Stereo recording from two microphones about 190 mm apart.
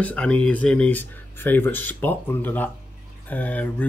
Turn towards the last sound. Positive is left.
turn(degrees=10)  # may be behind; listen again after turning